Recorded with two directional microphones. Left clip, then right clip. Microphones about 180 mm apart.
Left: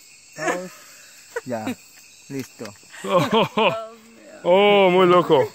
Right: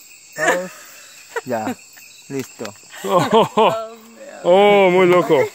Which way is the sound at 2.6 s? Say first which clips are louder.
Right 5 dB; 25° right (ahead or behind).